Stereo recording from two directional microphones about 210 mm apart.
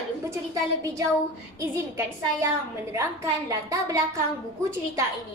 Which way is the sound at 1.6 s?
15° right (ahead or behind).